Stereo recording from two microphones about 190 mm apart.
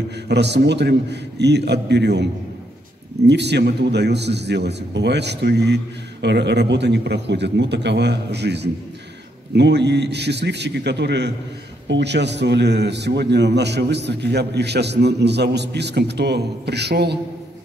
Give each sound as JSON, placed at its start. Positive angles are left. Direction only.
{"t": 0.3, "sound": "a man's voice", "side_deg": -65}
{"t": 3.3, "sound": "a man's voice", "side_deg": -65}